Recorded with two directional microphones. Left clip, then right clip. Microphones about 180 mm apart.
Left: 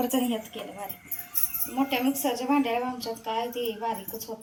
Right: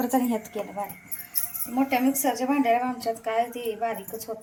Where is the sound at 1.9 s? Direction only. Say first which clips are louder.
Right 4 dB; 70° right (ahead or behind).